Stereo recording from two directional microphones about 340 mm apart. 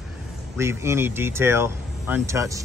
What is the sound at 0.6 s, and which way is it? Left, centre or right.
Speech, centre.